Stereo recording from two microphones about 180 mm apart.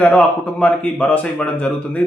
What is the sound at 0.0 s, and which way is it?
A man's voice, 10° left (ahead or behind).